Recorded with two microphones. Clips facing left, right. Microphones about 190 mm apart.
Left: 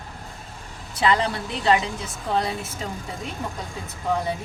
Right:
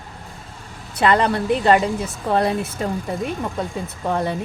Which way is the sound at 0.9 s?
55° right (ahead or behind).